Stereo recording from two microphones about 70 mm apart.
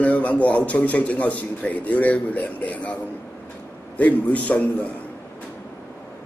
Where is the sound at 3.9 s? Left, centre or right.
Left.